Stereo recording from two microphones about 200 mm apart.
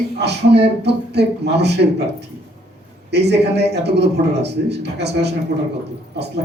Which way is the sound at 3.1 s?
55° right (ahead or behind).